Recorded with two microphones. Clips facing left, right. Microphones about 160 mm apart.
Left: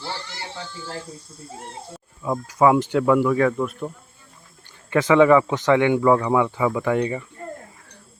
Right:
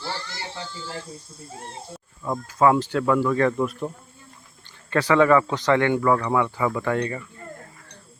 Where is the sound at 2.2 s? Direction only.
10° left (ahead or behind).